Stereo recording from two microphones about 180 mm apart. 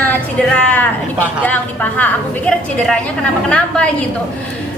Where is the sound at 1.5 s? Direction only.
10° left (ahead or behind).